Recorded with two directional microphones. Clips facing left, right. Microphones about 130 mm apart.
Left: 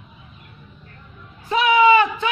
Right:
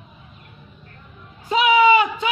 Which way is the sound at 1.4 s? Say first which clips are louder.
Even; 15° right (ahead or behind).